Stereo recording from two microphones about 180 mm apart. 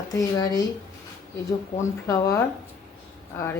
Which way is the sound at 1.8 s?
15° left (ahead or behind).